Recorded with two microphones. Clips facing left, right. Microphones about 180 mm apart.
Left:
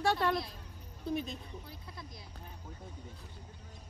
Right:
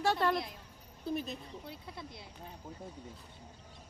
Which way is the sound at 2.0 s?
25° right (ahead or behind).